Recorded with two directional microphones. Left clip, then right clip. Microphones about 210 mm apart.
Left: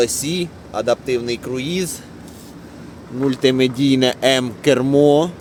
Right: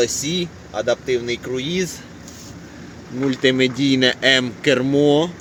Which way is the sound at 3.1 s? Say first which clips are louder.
Left 1 dB; 15° left (ahead or behind).